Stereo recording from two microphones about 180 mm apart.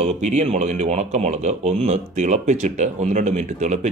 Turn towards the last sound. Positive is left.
turn(degrees=-40)  # may be behind; listen again after turning